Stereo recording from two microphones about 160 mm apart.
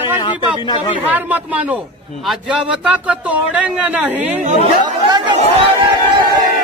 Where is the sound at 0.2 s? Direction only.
30° left (ahead or behind).